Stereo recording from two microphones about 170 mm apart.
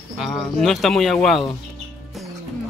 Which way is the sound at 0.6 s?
Centre (ahead or behind).